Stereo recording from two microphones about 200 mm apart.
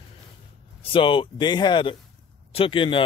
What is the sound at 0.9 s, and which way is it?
Speech, 25° left (ahead or behind).